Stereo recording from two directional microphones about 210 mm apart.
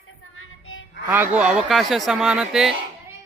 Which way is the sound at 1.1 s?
10° right (ahead or behind).